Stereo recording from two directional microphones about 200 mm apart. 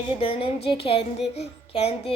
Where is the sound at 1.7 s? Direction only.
30° left (ahead or behind).